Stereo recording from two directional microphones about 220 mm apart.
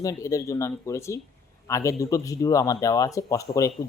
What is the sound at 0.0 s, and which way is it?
Speech, 15° left (ahead or behind).